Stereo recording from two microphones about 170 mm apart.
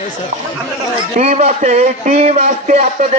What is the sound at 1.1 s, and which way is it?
A man's voice, 40° right (ahead or behind).